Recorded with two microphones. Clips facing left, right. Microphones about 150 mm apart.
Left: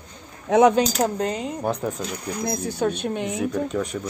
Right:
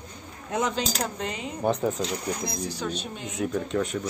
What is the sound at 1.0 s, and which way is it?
Speech, 40° left (ahead or behind).